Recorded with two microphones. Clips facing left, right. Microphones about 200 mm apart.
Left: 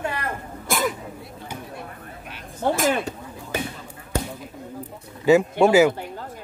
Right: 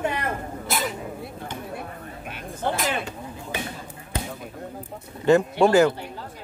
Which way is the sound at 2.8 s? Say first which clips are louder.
Left 5 dB; 50° left (ahead or behind).